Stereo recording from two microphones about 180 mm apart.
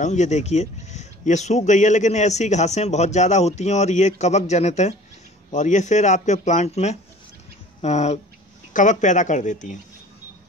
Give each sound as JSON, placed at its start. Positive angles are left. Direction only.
{"t": 0.0, "sound": "speech", "side_deg": 40}